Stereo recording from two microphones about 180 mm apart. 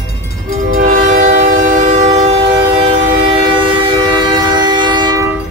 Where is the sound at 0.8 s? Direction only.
50° right (ahead or behind); by 5.3 s 25° right (ahead or behind).